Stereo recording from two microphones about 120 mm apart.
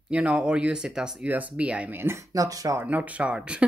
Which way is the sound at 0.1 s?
10° right (ahead or behind).